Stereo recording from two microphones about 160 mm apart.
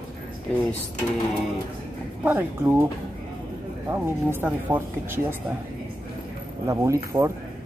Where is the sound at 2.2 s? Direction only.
10° right (ahead or behind).